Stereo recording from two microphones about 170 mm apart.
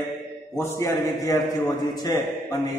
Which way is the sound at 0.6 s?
15° left (ahead or behind).